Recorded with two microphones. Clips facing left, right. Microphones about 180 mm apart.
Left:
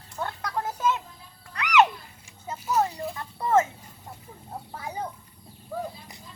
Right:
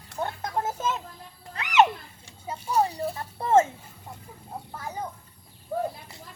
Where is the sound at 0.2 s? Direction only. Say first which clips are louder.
Right 2 dB; 25° right (ahead or behind).